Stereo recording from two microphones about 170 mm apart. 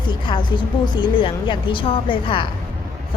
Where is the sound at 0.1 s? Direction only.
30° left (ahead or behind).